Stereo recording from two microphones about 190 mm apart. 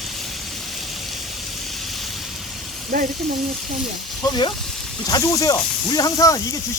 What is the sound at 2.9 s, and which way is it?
Speech, 50° right (ahead or behind).